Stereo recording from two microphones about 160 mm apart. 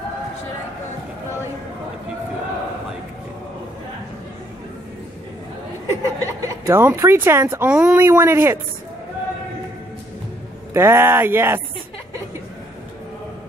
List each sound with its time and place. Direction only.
5.9 s speech: 20° right (ahead or behind)
10.7 s speech: 15° right (ahead or behind)